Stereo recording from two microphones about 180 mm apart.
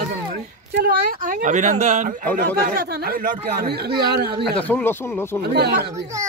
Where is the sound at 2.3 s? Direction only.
55° right (ahead or behind).